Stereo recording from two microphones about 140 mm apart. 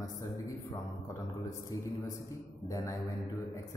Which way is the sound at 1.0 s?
25° left (ahead or behind).